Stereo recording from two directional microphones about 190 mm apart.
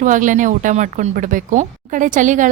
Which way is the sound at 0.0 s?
45° right (ahead or behind).